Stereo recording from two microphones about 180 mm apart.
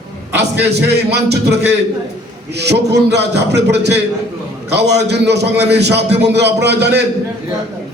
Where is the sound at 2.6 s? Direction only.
70° right (ahead or behind).